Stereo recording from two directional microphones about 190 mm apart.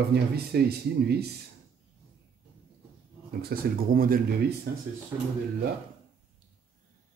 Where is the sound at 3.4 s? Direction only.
50° right (ahead or behind).